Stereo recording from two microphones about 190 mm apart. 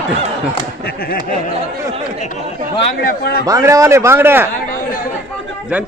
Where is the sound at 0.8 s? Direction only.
50° left (ahead or behind).